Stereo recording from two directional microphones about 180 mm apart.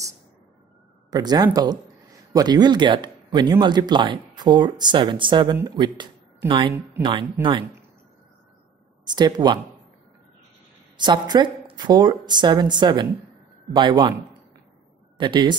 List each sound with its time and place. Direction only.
1.1 s speech: 20° right (ahead or behind)
9.1 s speech: 25° right (ahead or behind)
11.0 s speech: 25° right (ahead or behind)
15.1 s speech: 25° right (ahead or behind)